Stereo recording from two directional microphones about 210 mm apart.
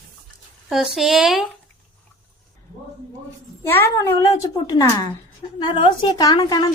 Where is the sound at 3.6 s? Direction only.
10° left (ahead or behind).